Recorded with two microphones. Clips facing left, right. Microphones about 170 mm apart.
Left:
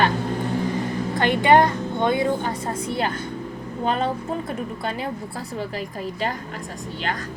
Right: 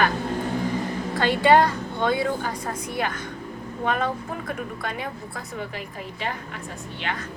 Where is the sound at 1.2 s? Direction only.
20° left (ahead or behind); by 7.3 s 40° left (ahead or behind).